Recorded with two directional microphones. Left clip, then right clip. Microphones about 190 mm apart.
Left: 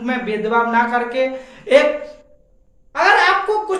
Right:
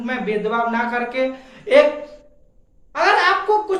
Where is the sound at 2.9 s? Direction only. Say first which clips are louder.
Left 2 dB; 10° left (ahead or behind).